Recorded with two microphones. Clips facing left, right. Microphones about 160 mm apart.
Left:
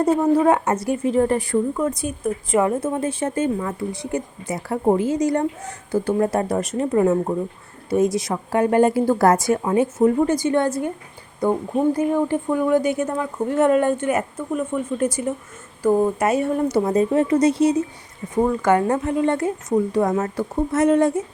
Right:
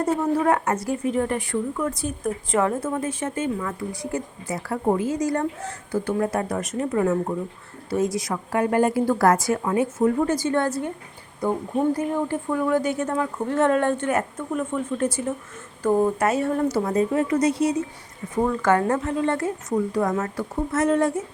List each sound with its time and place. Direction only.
0.0 s a woman's voice: 20° left (ahead or behind)
1.9 s a woman's voice: 20° left (ahead or behind)
2.8 s speech: 25° left (ahead or behind)
3.7 s a woman's voice: 25° left (ahead or behind)
6.1 s a woman's voice: 30° left (ahead or behind)
11.9 s a woman's voice: 20° left (ahead or behind)
18.3 s a woman's voice: 15° left (ahead or behind)